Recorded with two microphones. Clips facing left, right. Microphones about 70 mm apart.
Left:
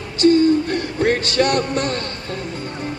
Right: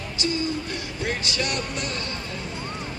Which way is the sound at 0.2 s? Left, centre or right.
Left.